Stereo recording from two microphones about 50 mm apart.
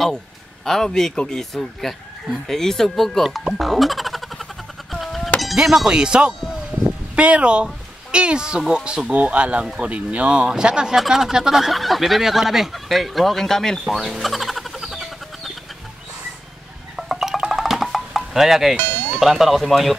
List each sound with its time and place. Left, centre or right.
0.7 s speech: centre
3.3 s music: centre
4.9 s sheep: centre
5.9 s speech: centre
13.8 s speech: centre
14.2 s music: centre
16.9 s a sound: centre
17.5 s music: centre